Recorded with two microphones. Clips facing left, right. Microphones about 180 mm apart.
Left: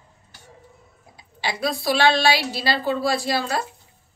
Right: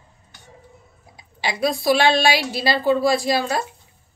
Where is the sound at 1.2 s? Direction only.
15° right (ahead or behind).